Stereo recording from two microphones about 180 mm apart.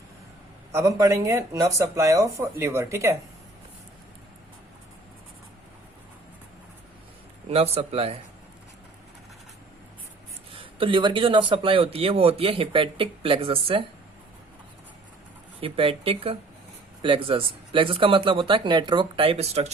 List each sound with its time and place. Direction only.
0.7 s speech: 15° right (ahead or behind)
7.4 s speech: 35° right (ahead or behind)
10.5 s speech: 30° right (ahead or behind)
15.6 s speech: 30° right (ahead or behind)